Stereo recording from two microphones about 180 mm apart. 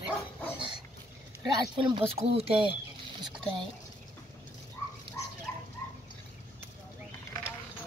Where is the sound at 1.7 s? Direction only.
25° right (ahead or behind).